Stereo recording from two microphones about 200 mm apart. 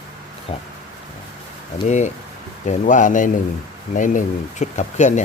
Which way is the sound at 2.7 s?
40° left (ahead or behind).